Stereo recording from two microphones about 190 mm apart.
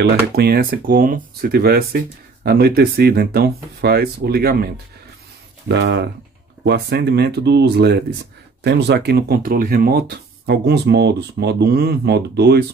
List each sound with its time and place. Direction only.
0.0 s speech: 55° right (ahead or behind)
5.7 s speech: 65° right (ahead or behind)